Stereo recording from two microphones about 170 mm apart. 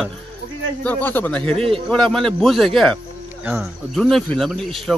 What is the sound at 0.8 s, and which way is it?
A man's voice, 10° left (ahead or behind).